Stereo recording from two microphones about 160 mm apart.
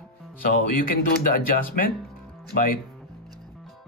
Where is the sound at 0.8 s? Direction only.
65° left (ahead or behind).